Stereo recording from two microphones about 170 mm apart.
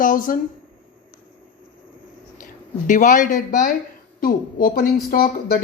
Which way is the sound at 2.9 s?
50° left (ahead or behind).